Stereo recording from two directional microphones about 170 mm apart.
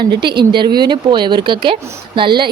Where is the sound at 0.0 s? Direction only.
25° right (ahead or behind).